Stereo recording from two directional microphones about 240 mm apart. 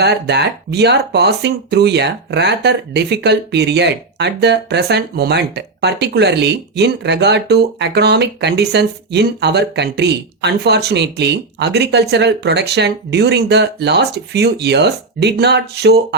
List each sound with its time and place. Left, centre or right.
0.0 s speech: right